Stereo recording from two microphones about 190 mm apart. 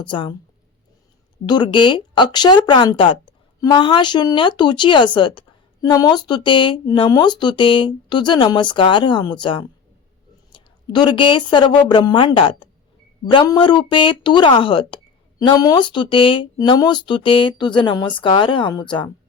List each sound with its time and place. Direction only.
0.1 s speech: 25° left (ahead or behind)
1.5 s speech: 25° left (ahead or behind)